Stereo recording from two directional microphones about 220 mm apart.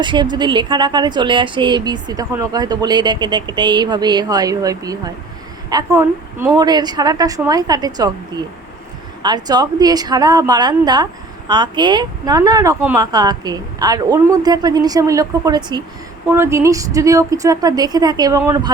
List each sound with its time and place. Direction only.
0.0 s a woman's voice: 20° right (ahead or behind)